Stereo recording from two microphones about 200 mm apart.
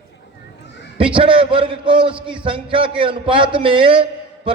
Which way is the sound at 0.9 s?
25° right (ahead or behind).